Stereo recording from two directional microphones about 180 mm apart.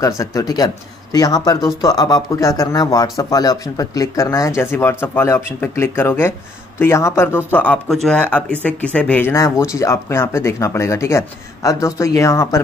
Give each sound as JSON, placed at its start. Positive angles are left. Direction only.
{"t": 0.2, "sound": "speech", "side_deg": 20}